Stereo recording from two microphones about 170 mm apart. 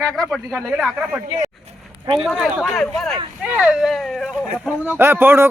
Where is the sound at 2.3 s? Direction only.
Centre (ahead or behind).